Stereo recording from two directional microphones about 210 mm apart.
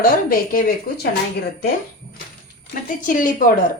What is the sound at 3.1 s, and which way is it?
Speech, 40° left (ahead or behind).